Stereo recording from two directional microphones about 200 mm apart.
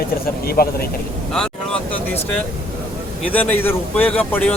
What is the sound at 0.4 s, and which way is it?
Speech, 50° left (ahead or behind).